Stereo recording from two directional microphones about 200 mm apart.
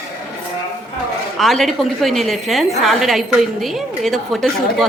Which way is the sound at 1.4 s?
Centre (ahead or behind).